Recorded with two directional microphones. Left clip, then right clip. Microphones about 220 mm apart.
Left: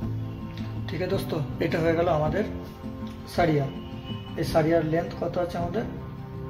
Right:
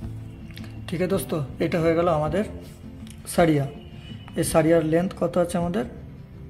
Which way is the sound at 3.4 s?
40° right (ahead or behind).